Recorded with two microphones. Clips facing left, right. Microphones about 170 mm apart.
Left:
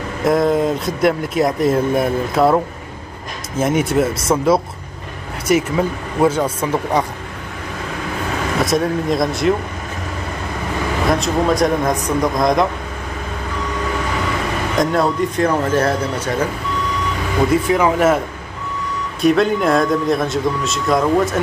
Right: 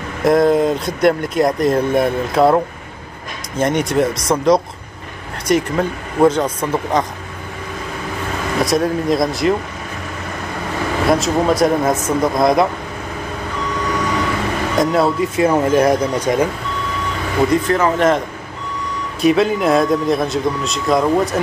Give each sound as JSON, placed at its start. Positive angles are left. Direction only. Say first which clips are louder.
{"t": 0.2, "sound": "speech", "louder": "right 2 dB", "side_deg": 0}
{"t": 8.6, "sound": "speech", "louder": "right 2 dB", "side_deg": 0}
{"t": 11.1, "sound": "speech", "louder": "right 2 dB", "side_deg": 0}
{"t": 14.8, "sound": "speech", "louder": "right 1 dB", "side_deg": -5}
{"t": 17.5, "sound": "speech", "louder": "left 2 dB", "side_deg": 10}
{"t": 19.2, "sound": "speech", "louder": "even", "side_deg": 0}